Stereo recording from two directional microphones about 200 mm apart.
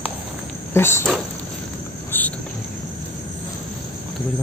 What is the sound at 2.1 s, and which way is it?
Cricket, 10° left (ahead or behind).